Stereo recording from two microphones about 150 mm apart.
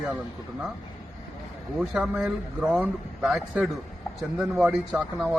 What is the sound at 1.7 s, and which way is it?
Speech, 5° right (ahead or behind).